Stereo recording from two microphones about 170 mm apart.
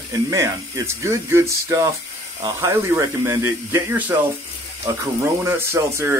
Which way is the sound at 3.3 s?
15° right (ahead or behind).